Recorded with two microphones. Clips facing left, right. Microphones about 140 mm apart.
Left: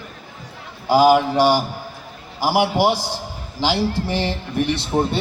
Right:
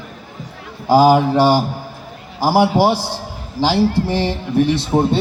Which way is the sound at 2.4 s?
35° right (ahead or behind).